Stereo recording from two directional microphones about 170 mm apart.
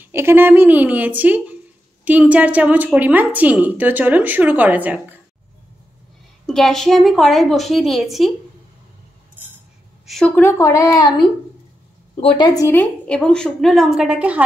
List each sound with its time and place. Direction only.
0.0 s a woman's voice: 15° right (ahead or behind)
6.4 s a woman's voice: centre (ahead or behind)
10.0 s a woman's voice: 5° left (ahead or behind)